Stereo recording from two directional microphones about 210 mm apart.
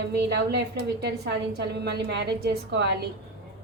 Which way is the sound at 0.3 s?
55° right (ahead or behind).